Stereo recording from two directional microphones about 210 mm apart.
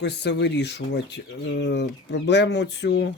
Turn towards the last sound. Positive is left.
turn(degrees=55)  # may be behind; listen again after turning